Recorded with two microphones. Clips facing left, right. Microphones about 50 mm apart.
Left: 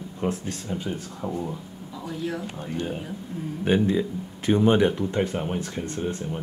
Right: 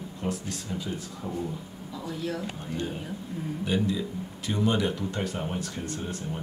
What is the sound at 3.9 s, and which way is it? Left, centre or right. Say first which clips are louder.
Speech: left 5 dB; left.